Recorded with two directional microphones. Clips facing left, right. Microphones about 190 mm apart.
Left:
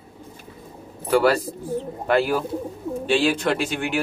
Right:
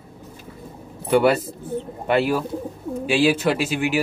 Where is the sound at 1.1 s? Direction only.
5° right (ahead or behind).